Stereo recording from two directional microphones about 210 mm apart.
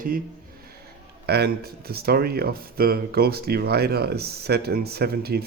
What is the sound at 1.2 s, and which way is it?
Speech, 50° right (ahead or behind).